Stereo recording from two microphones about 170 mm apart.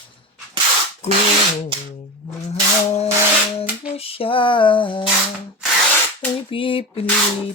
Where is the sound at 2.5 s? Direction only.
40° left (ahead or behind).